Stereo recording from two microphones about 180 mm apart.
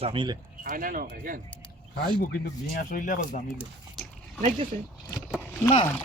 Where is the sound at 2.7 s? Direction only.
45° left (ahead or behind).